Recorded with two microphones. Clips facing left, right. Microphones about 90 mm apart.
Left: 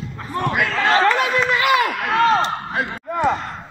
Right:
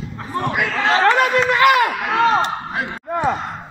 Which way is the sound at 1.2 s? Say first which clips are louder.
Right 4 dB; 55° right (ahead or behind).